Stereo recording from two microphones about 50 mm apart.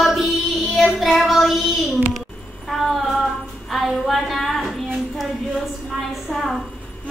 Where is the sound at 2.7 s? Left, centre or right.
Centre.